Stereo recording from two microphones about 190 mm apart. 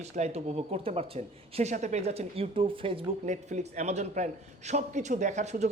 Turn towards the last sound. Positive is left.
turn(degrees=-35)  # may be behind; listen again after turning